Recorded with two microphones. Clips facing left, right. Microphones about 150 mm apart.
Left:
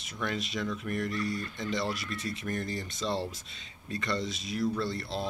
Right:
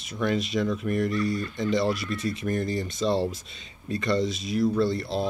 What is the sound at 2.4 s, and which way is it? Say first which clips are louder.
Speech: right 7 dB; 25° right (ahead or behind).